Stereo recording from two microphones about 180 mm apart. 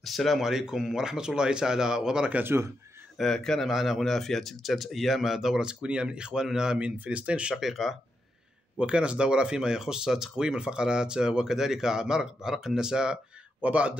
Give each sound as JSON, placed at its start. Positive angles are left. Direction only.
{"t": 0.0, "sound": "speech", "side_deg": 0}
{"t": 3.2, "sound": "speech", "side_deg": 5}